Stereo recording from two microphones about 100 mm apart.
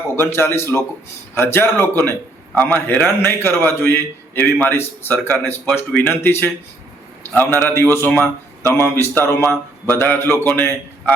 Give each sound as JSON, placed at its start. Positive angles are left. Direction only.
{"t": 0.3, "sound": "a man's voice", "side_deg": 25}